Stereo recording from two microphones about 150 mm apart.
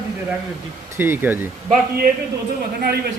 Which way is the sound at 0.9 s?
15° right (ahead or behind).